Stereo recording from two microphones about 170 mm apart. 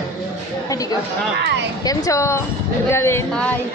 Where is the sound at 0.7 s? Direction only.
20° left (ahead or behind).